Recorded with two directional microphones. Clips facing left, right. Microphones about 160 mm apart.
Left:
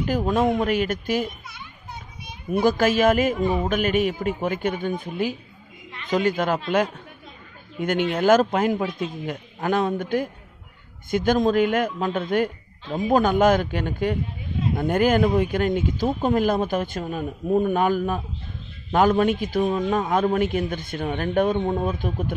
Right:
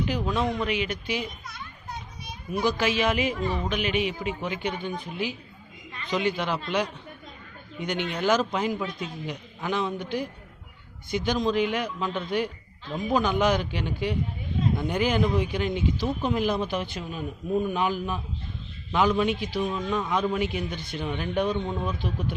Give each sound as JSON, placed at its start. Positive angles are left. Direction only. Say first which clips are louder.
{"t": 0.0, "sound": "speech", "louder": "left 5 dB", "side_deg": 45}
{"t": 2.5, "sound": "speech", "louder": "left 6 dB", "side_deg": 50}
{"t": 3.3, "sound": "speech", "louder": "left 6 dB", "side_deg": 0}
{"t": 3.6, "sound": "speech", "louder": "left 5 dB", "side_deg": 45}
{"t": 8.1, "sound": "speech", "louder": "left 6 dB", "side_deg": 50}